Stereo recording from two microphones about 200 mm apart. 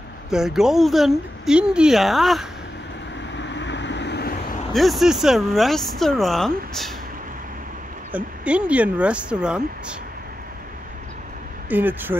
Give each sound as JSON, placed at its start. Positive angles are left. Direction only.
{"t": 0.3, "sound": "speech", "side_deg": 0}
{"t": 3.3, "sound": "vehicle", "side_deg": 65}
{"t": 4.7, "sound": "speech", "side_deg": 0}
{"t": 8.1, "sound": "speech", "side_deg": -5}
{"t": 11.7, "sound": "speech", "side_deg": -10}